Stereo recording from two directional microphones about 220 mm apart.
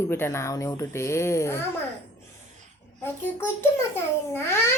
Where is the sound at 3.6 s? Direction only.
10° left (ahead or behind).